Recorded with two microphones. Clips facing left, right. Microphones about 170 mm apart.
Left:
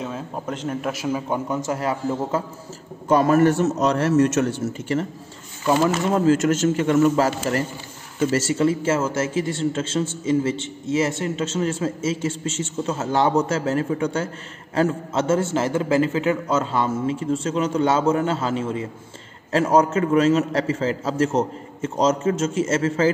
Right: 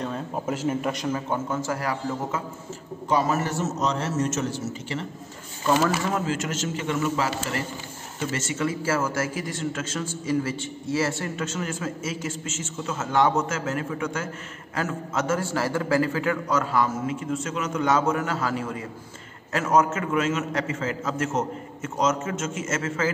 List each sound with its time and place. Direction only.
0.5 s a man's voice: 5° right (ahead or behind); by 2.4 s 25° left (ahead or behind)
3.1 s a man's voice: 55° left (ahead or behind)
6.2 s a man's voice: 45° left (ahead or behind)